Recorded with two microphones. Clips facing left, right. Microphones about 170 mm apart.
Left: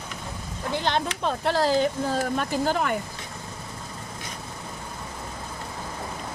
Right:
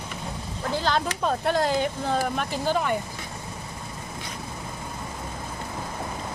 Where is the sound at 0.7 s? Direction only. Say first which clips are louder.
Even; 20° left (ahead or behind); by 3.0 s 45° left (ahead or behind).